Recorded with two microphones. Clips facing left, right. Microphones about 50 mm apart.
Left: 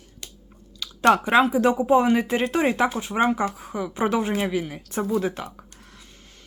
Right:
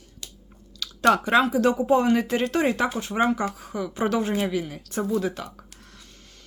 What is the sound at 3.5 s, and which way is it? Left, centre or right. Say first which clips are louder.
A woman's voice: left 1 dB; left.